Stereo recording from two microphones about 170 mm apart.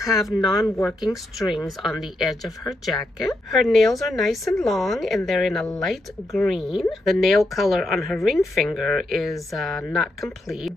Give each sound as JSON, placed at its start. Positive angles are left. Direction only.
{"t": 0.1, "sound": "speech", "side_deg": 0}
{"t": 0.6, "sound": "speech", "side_deg": 15}
{"t": 0.8, "sound": "speech", "side_deg": 0}